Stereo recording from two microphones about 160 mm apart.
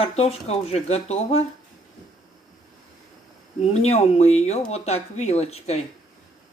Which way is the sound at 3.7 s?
40° left (ahead or behind).